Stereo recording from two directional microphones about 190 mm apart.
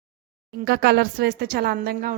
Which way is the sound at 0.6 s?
60° right (ahead or behind).